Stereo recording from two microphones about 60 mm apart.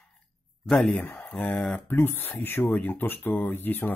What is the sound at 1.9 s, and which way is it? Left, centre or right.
Speech, left.